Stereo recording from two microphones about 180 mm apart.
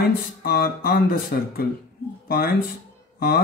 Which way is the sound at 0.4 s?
60° left (ahead or behind).